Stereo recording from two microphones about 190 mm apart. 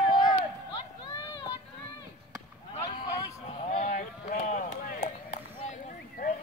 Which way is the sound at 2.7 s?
30° left (ahead or behind).